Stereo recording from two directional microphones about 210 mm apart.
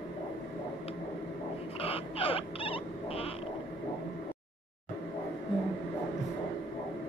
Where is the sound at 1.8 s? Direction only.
25° left (ahead or behind).